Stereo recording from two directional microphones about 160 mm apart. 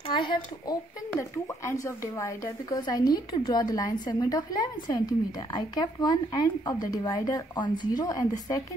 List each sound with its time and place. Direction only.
0.1 s speech: 30° left (ahead or behind)